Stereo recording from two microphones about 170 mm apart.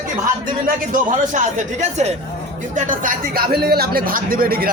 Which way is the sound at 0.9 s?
50° right (ahead or behind).